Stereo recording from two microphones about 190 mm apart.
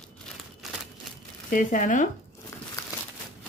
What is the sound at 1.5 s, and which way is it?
Speech, 45° left (ahead or behind).